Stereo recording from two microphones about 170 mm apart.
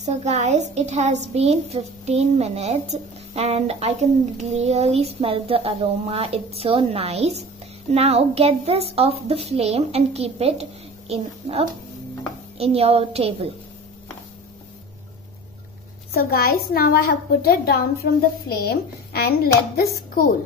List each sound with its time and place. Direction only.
0.0 s a woman's voice: 40° right (ahead or behind)
16.1 s a woman's voice: 60° left (ahead or behind)